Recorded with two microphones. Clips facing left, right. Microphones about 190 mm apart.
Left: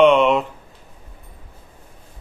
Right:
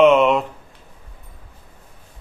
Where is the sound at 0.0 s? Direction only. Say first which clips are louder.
Even; centre (ahead or behind).